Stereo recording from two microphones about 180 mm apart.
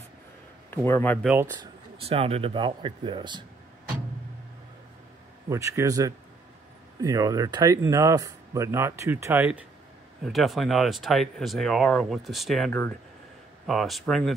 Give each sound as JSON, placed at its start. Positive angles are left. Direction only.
{"t": 0.7, "sound": "a man's voice", "side_deg": 10}
{"t": 1.2, "sound": "speech", "side_deg": -10}
{"t": 1.6, "sound": "speech", "side_deg": -30}
{"t": 5.5, "sound": "speech", "side_deg": -15}